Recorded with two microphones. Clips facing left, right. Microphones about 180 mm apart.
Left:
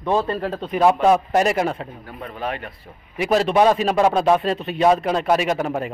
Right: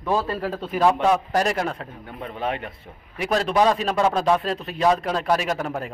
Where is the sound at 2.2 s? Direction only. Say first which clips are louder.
Right 1 dB; 25° right (ahead or behind).